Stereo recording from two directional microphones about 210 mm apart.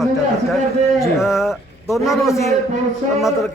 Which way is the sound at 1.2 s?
Centre (ahead or behind).